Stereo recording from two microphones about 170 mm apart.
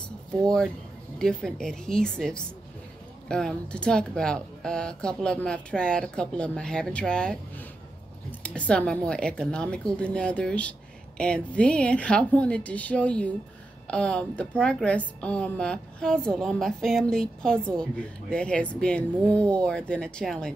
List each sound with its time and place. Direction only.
1.1 s a woman's voice: 5° left (ahead or behind)